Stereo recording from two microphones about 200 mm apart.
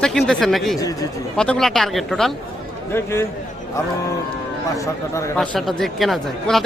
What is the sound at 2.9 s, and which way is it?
Speech, 10° left (ahead or behind).